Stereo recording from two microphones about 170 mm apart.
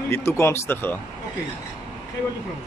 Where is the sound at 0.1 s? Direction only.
15° left (ahead or behind).